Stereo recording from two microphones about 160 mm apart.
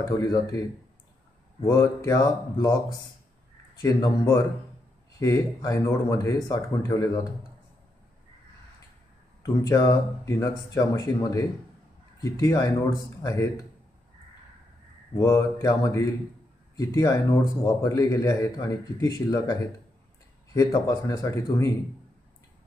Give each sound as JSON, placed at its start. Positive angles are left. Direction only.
{"t": 0.0, "sound": "speech", "side_deg": 20}
{"t": 1.6, "sound": "speech", "side_deg": 20}
{"t": 3.8, "sound": "speech", "side_deg": 20}
{"t": 9.4, "sound": "speech", "side_deg": 20}
{"t": 15.1, "sound": "speech", "side_deg": 20}